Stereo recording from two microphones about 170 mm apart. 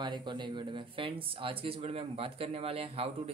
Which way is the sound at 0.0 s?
25° right (ahead or behind).